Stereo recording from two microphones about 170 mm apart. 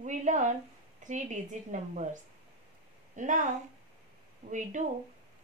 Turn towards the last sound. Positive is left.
turn(degrees=-45)  # may be behind; listen again after turning